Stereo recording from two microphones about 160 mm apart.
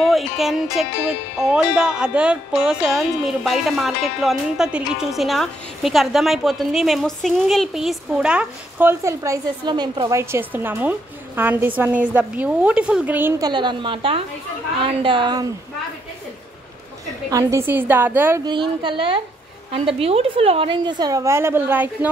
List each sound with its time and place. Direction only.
0.0 s speech: centre (ahead or behind)
13.4 s a woman's voice: 30° right (ahead or behind)
17.3 s a woman's voice: 20° right (ahead or behind)
18.4 s a woman's voice: 30° right (ahead or behind); by 22.1 s 10° right (ahead or behind)